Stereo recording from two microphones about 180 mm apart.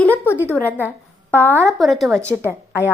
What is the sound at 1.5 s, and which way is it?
Speech, 15° right (ahead or behind).